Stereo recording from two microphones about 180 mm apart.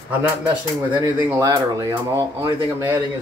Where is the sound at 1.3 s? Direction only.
20° right (ahead or behind).